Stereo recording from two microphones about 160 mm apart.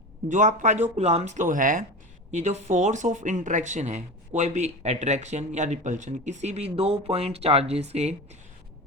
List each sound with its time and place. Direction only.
0.3 s speech: 50° right (ahead or behind)